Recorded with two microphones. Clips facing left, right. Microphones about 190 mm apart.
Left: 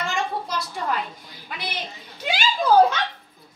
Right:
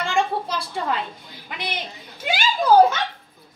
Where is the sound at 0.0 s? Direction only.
30° right (ahead or behind).